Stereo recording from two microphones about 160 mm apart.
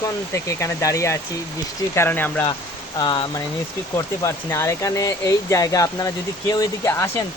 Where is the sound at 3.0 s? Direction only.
25° left (ahead or behind).